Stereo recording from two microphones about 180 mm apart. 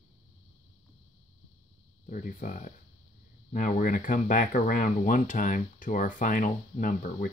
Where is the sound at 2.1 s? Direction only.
50° left (ahead or behind).